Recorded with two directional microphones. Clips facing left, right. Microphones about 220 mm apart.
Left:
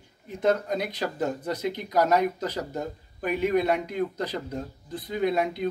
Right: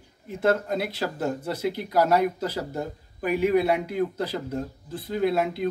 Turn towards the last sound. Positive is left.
turn(degrees=-5)  # may be behind; listen again after turning